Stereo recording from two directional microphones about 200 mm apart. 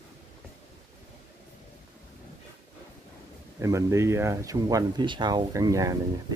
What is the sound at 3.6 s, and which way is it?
Speech, 15° right (ahead or behind).